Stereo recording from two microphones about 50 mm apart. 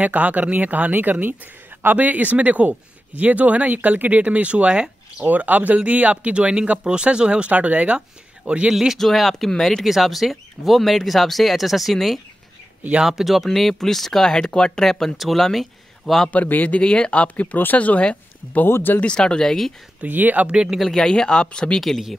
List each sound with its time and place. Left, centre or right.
0.0 s speech: right
5.2 s speech: right
8.9 s speech: centre
9.8 s speech: centre
16.3 s a man's voice: left
16.8 s speech: centre
18.7 s speech: left
18.9 s speech: centre
20.1 s speech: right
20.5 s speech: centre
20.8 s speech: centre
21.7 s speech: centre